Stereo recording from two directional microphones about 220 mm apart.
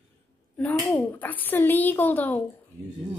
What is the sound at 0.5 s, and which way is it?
Speech, 5° left (ahead or behind).